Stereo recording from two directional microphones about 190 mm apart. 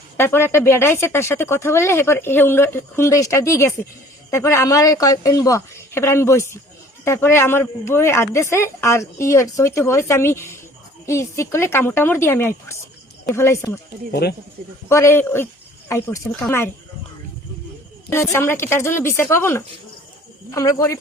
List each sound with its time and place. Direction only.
0.2 s speech: 10° left (ahead or behind)
14.1 s speech: 60° left (ahead or behind)
14.8 s speech: 15° left (ahead or behind)
18.1 s speech: 15° left (ahead or behind)